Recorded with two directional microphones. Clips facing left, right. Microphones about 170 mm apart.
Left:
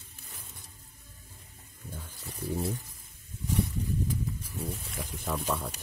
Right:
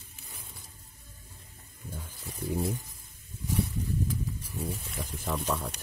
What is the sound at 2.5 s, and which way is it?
Speech, 10° right (ahead or behind).